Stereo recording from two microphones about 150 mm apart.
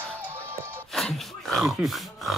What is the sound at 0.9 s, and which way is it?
Speech, 5° left (ahead or behind).